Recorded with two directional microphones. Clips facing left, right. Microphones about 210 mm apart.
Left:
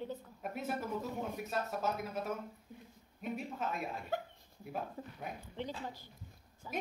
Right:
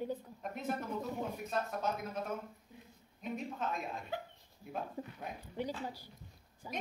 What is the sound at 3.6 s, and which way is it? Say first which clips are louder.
Speech: even; 5° left (ahead or behind).